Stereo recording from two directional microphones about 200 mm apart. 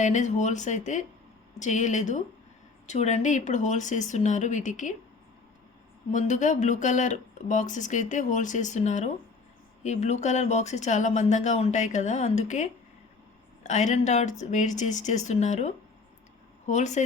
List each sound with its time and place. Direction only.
0.0 s speech: 35° left (ahead or behind)
6.1 s speech: 35° left (ahead or behind)
13.7 s speech: 35° left (ahead or behind)